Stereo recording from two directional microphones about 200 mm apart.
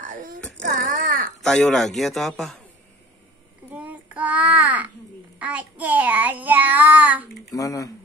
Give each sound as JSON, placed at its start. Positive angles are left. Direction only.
{"t": 0.0, "sound": "a sound", "side_deg": -45}
{"t": 1.4, "sound": "a man's voice", "side_deg": 0}
{"t": 3.7, "sound": "child singing", "side_deg": -5}
{"t": 7.5, "sound": "speech", "side_deg": 15}